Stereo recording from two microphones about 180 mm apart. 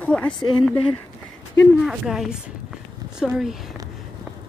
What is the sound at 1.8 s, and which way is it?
Speech, 5° right (ahead or behind).